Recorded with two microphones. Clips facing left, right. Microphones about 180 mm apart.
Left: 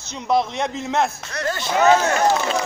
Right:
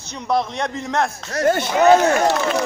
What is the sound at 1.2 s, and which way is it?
Speech, 50° right (ahead or behind).